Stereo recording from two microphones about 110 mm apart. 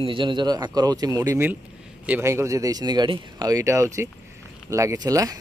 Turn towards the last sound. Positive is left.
turn(degrees=-35)  # may be behind; listen again after turning